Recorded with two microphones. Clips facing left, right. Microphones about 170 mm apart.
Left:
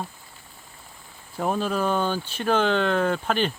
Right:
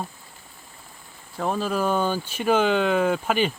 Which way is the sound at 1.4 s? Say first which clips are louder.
Even; centre (ahead or behind).